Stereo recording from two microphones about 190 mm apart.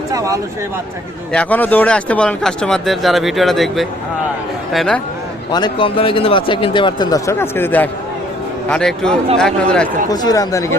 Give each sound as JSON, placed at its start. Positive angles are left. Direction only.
{"t": 0.1, "sound": "speech", "side_deg": -15}
{"t": 1.3, "sound": "speech", "side_deg": 5}
{"t": 5.5, "sound": "a man's voice", "side_deg": 20}
{"t": 10.1, "sound": "speech", "side_deg": 20}